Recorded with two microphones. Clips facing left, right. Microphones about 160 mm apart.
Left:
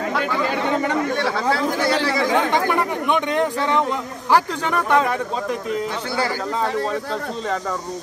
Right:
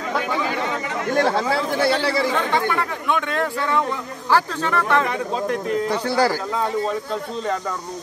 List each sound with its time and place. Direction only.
3.1 s speech: 20° left (ahead or behind)